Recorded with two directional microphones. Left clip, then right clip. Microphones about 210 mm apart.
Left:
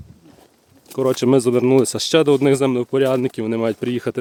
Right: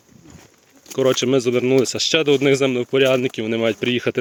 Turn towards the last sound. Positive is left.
turn(degrees=15)  # may be behind; listen again after turning